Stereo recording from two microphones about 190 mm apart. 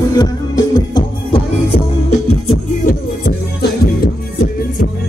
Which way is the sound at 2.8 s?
55° left (ahead or behind).